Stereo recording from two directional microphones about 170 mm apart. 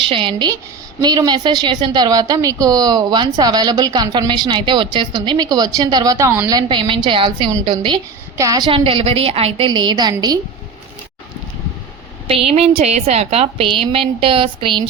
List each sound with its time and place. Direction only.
0.1 s a woman's voice: 30° right (ahead or behind)
12.3 s a woman's voice: 35° right (ahead or behind)